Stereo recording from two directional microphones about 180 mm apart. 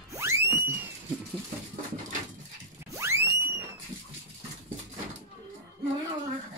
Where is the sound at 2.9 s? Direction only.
15° right (ahead or behind).